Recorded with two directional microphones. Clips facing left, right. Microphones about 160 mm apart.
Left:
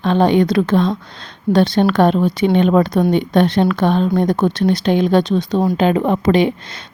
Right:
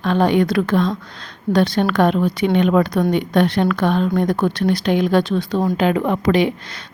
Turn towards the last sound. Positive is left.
turn(degrees=25)  # may be behind; listen again after turning